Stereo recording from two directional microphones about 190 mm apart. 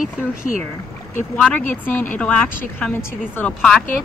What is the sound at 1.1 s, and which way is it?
Speech, 5° left (ahead or behind).